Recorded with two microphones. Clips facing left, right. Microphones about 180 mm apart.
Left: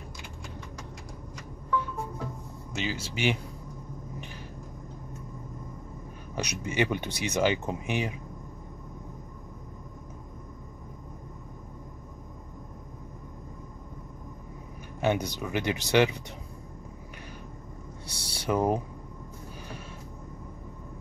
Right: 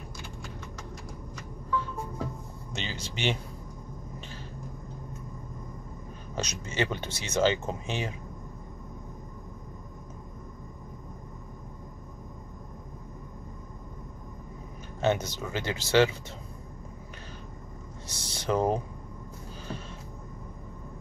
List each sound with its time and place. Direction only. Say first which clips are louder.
2.7 s speech: left 4 dB; 5° left (ahead or behind)
6.3 s speech: left 2 dB; 15° left (ahead or behind)
15.0 s speech: even; 15° left (ahead or behind)
18.0 s a sound: even; 10° left (ahead or behind)